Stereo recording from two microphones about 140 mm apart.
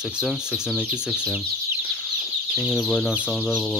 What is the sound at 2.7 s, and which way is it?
Speech, 5° left (ahead or behind).